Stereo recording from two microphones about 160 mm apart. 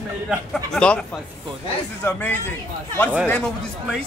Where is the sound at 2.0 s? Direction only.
15° left (ahead or behind).